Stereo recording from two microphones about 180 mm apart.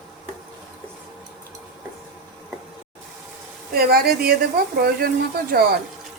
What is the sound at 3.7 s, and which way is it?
Speech, 60° right (ahead or behind).